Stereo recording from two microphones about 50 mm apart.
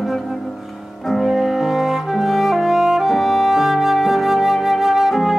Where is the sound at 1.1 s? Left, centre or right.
Centre.